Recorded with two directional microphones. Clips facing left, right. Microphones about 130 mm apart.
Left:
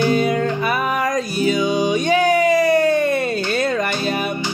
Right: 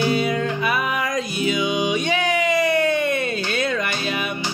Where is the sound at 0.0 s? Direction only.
40° left (ahead or behind).